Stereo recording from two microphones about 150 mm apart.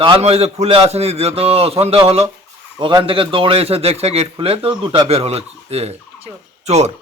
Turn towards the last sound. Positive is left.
turn(degrees=-45)  # may be behind; listen again after turning